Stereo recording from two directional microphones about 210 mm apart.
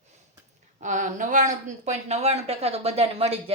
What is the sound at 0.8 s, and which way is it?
A woman's voice, 35° right (ahead or behind).